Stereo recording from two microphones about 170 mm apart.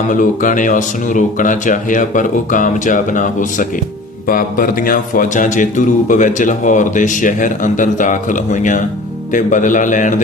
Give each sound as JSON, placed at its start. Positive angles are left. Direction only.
{"t": 0.1, "sound": "a man's voice", "side_deg": 50}